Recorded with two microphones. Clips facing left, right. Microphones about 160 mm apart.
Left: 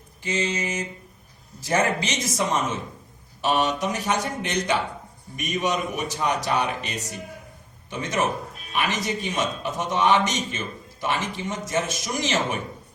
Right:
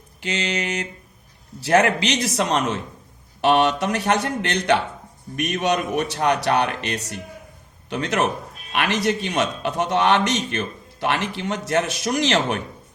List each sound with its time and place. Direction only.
0.2 s a man's voice: 75° right (ahead or behind)